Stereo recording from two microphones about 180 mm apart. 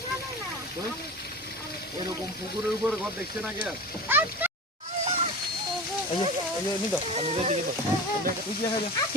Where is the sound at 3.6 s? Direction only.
10° right (ahead or behind).